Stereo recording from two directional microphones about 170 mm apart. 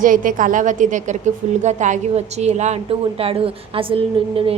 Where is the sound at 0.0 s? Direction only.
50° right (ahead or behind).